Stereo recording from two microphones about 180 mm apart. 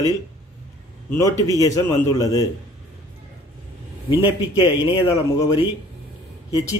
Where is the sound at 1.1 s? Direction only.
15° left (ahead or behind).